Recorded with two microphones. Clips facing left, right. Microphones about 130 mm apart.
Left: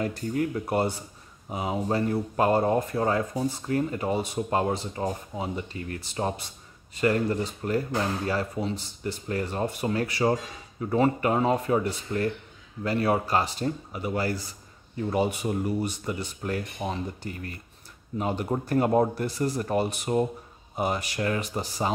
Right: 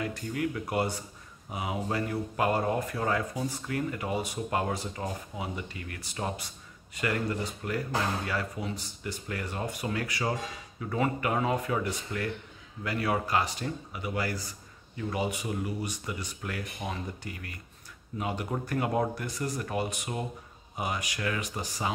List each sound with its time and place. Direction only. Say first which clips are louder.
0.0 s speech: left 4 dB; 35° left (ahead or behind)